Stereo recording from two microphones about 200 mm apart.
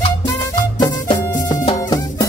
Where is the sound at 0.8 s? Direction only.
25° left (ahead or behind).